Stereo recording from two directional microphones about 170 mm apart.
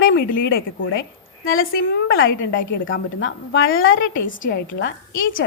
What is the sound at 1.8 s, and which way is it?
A woman's voice, 90° left.